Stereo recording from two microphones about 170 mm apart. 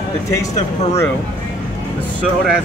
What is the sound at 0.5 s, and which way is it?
Speech, 40° left (ahead or behind).